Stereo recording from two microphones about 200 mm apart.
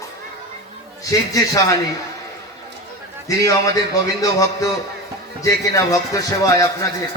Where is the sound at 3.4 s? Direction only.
15° left (ahead or behind).